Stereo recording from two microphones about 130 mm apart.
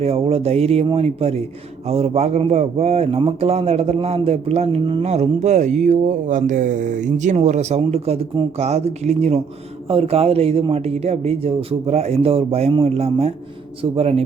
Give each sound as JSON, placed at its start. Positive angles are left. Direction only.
{"t": 0.0, "sound": "a man's voice", "side_deg": -50}